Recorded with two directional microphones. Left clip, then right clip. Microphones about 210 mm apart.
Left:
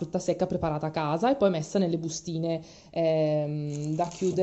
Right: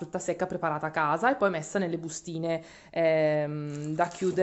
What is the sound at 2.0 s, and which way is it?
Speech, 25° right (ahead or behind).